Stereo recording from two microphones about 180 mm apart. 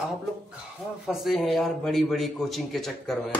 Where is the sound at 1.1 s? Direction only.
Centre (ahead or behind).